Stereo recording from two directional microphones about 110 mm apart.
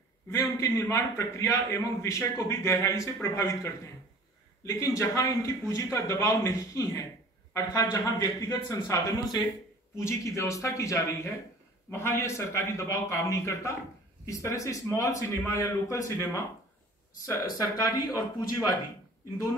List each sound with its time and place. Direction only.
0.3 s a man's voice: 30° left (ahead or behind)